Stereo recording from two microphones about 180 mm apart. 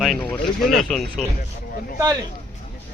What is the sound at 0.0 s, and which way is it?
Speech, centre (ahead or behind).